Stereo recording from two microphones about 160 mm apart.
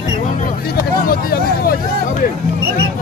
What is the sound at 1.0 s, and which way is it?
Hubbub, 65° left (ahead or behind).